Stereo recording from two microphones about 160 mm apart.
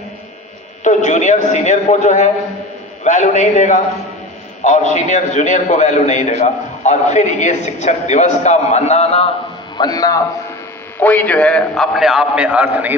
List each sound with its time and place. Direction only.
0.8 s a man's voice: 50° left (ahead or behind)
4.9 s a man's voice: 50° left (ahead or behind)
9.8 s a man's voice: 25° left (ahead or behind)
11.0 s a man's voice: 10° left (ahead or behind); by 12.9 s 10° right (ahead or behind)